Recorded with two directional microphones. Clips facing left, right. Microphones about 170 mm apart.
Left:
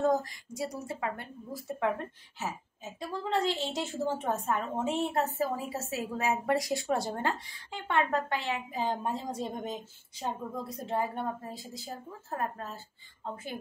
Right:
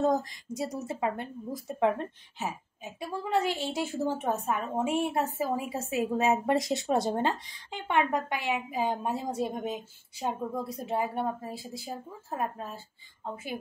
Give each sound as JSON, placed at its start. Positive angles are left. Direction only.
{"t": 0.0, "sound": "speech", "side_deg": -20}